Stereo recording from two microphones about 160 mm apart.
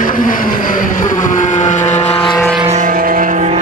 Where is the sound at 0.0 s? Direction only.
60° left (ahead or behind); by 2.3 s 40° left (ahead or behind).